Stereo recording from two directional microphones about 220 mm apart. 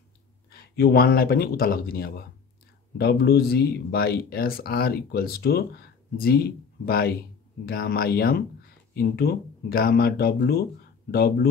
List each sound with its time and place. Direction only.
0.5 s speech: 45° left (ahead or behind)